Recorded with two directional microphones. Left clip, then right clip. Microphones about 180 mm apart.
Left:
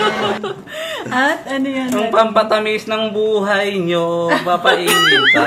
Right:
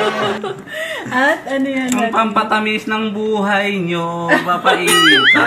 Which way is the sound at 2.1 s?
70° left (ahead or behind).